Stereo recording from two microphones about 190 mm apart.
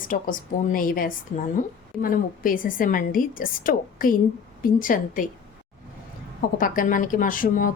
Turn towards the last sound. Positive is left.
turn(degrees=45)  # may be behind; listen again after turning